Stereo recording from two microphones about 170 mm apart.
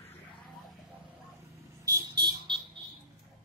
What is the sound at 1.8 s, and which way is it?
Vehicle, 20° right (ahead or behind).